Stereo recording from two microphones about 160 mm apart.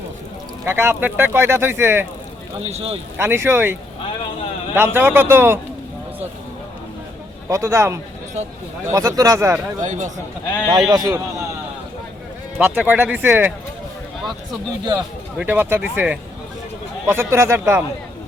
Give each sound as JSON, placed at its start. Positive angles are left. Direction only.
{"t": 0.6, "sound": "speech", "side_deg": -15}
{"t": 2.6, "sound": "speech", "side_deg": -40}
{"t": 3.2, "sound": "speech", "side_deg": -15}
{"t": 7.4, "sound": "a man's voice", "side_deg": -20}
{"t": 9.8, "sound": "speech", "side_deg": -50}
{"t": 10.7, "sound": "a man's voice", "side_deg": -25}
{"t": 12.5, "sound": "speech", "side_deg": -5}
{"t": 15.4, "sound": "speech", "side_deg": -10}